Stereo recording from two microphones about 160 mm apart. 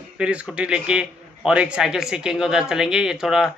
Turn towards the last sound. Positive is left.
turn(degrees=-5)  # may be behind; listen again after turning